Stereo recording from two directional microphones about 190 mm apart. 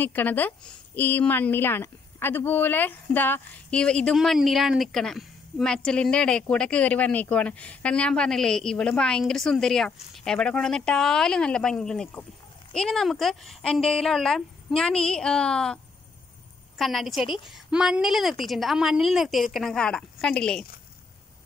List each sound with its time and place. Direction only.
0.0 s a woman's voice: 10° left (ahead or behind)